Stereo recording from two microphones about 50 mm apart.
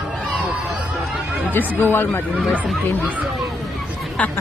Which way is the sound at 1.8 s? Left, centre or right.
Left.